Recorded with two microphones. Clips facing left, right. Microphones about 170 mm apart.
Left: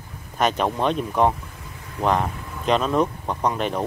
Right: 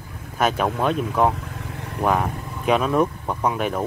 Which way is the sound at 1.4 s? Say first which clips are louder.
Right 7 dB; 70° right (ahead or behind).